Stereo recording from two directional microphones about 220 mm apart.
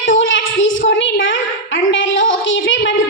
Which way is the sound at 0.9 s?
55° left (ahead or behind).